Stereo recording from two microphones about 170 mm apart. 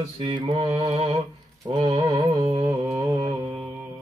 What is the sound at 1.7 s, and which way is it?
Music, 25° right (ahead or behind).